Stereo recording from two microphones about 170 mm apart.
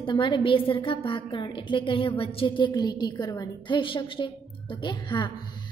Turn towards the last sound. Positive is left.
turn(degrees=25)  # may be behind; listen again after turning